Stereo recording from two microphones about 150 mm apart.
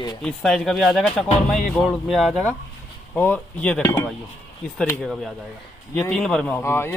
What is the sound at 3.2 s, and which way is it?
Speech, 10° left (ahead or behind).